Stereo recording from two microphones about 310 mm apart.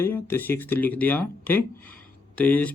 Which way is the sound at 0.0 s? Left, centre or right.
Centre.